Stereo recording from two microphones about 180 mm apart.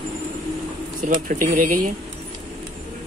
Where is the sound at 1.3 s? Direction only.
50° right (ahead or behind).